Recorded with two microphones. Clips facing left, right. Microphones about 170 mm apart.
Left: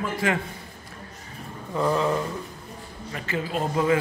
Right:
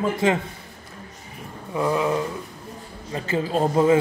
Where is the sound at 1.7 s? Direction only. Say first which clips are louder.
Right 1 dB; 10° right (ahead or behind).